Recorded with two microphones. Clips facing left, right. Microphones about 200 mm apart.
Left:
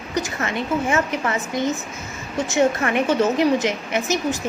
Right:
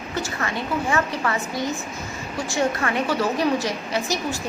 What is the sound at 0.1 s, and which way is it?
A woman's voice, 20° left (ahead or behind).